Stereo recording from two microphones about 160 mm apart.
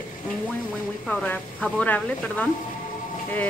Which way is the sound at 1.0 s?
5° left (ahead or behind).